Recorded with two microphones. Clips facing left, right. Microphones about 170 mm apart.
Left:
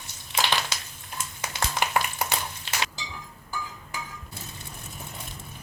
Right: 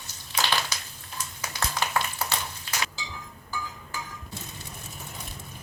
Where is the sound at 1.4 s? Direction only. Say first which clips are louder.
Left 2 dB; 20° left (ahead or behind).